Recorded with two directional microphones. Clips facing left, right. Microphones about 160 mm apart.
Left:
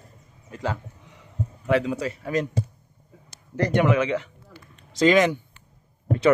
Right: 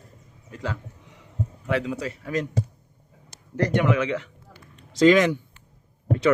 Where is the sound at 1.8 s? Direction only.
35° left (ahead or behind).